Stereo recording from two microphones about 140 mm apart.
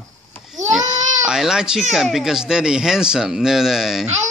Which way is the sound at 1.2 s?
5° right (ahead or behind).